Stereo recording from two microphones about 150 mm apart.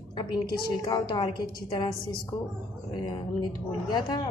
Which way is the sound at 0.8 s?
30° left (ahead or behind).